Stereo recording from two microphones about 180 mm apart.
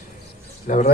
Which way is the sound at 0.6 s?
40° left (ahead or behind).